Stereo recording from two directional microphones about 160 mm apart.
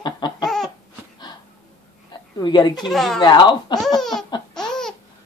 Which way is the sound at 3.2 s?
25° left (ahead or behind).